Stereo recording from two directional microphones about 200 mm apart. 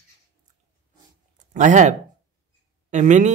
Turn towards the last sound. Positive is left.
turn(degrees=-35)  # may be behind; listen again after turning